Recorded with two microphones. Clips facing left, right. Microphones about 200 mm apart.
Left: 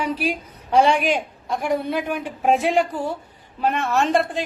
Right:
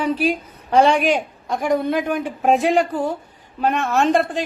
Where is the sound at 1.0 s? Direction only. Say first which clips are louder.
Right 3 dB; 45° right (ahead or behind).